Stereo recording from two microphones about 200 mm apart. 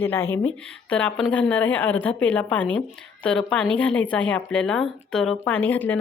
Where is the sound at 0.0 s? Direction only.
10° left (ahead or behind).